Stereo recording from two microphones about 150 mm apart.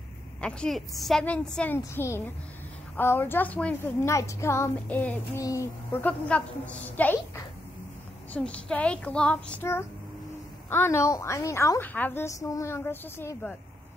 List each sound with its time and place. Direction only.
0.4 s a woman's voice: 5° left (ahead or behind)
1.8 s a woman's voice: 15° left (ahead or behind)